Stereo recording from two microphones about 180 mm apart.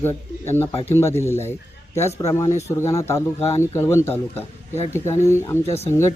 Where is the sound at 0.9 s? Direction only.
15° left (ahead or behind).